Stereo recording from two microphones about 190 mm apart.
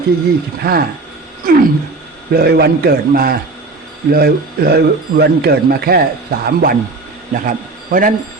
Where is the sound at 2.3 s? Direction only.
55° right (ahead or behind).